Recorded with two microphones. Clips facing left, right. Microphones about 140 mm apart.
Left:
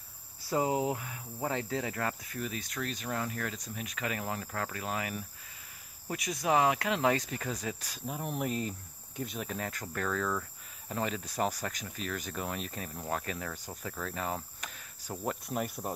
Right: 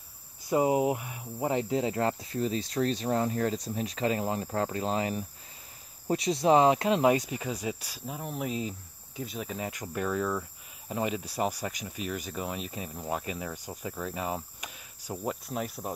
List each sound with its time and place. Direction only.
0.4 s cricket: 20° right (ahead or behind)
6.0 s speech: 30° right (ahead or behind); by 9.7 s centre (ahead or behind)
9.7 s speech: 15° right (ahead or behind)
15.4 s cricket: centre (ahead or behind)